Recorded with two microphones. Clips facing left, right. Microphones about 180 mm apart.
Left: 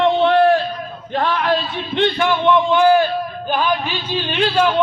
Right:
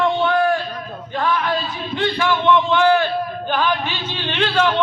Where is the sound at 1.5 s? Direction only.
25° left (ahead or behind).